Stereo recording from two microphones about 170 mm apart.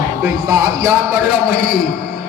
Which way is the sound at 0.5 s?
20° right (ahead or behind).